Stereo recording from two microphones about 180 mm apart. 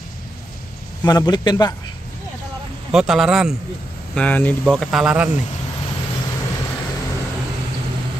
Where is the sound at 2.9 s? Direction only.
5° right (ahead or behind).